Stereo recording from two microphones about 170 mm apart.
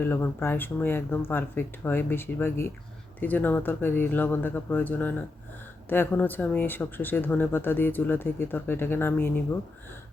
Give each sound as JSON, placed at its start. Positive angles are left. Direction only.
{"t": 0.0, "sound": "speech", "side_deg": 10}